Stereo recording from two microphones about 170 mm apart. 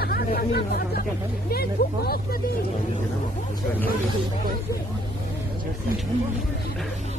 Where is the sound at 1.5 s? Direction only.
65° left (ahead or behind).